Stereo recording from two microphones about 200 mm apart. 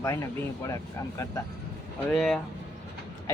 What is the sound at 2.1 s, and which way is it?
Speech, centre (ahead or behind).